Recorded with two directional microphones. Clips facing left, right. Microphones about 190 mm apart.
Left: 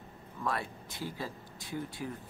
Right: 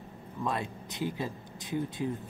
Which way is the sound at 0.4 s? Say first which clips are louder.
Right 2 dB; 20° right (ahead or behind).